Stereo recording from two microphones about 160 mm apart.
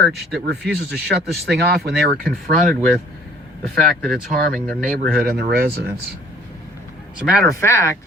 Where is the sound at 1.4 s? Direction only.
75° right (ahead or behind).